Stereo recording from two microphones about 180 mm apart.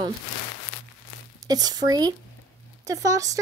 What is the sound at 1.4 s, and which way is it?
Speech, 20° right (ahead or behind).